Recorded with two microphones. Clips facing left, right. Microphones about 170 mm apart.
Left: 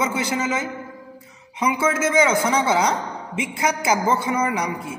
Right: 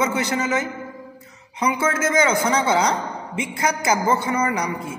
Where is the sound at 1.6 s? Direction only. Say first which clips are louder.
Left 1 dB; 10° left (ahead or behind).